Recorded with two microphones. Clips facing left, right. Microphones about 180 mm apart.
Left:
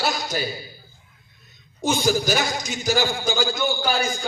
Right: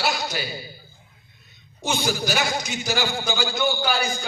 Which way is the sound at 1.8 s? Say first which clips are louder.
Left 4 dB; 45° left (ahead or behind).